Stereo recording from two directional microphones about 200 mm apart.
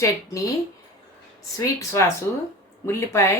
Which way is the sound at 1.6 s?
15° left (ahead or behind).